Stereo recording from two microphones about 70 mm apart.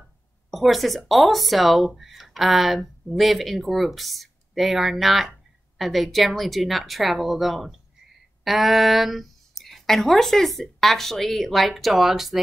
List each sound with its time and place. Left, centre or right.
0.5 s speech: centre